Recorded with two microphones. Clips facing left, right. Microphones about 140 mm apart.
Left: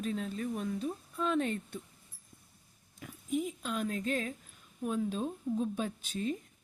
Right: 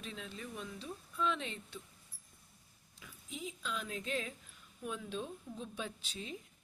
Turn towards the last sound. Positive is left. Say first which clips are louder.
# left 10 dB
turn(degrees=50)  # may be behind; listen again after turning